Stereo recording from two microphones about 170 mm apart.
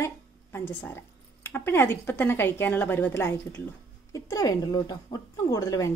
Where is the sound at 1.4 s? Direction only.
15° left (ahead or behind).